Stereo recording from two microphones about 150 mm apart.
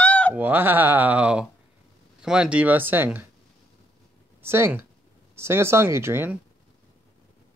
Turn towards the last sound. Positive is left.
turn(degrees=-15)  # may be behind; listen again after turning